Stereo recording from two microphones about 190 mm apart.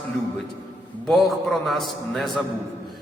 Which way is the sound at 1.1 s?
Centre (ahead or behind).